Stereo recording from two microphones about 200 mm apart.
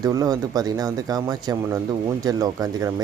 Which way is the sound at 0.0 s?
20° right (ahead or behind).